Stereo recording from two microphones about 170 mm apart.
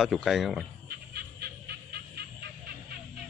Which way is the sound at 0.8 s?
70° right (ahead or behind).